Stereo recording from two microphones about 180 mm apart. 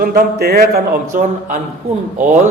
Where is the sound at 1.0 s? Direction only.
45° right (ahead or behind).